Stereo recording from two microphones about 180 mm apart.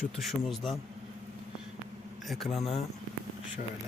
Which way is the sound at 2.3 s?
Centre (ahead or behind).